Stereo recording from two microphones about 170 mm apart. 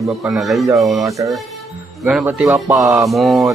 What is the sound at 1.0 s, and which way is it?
Speech, 20° right (ahead or behind).